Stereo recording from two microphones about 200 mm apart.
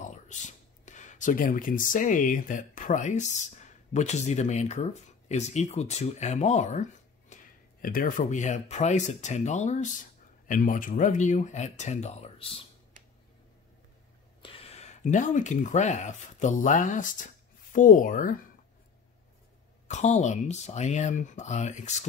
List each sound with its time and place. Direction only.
0.0 s speech: 40° left (ahead or behind)
14.4 s speech: 30° left (ahead or behind)
19.9 s speech: 35° left (ahead or behind)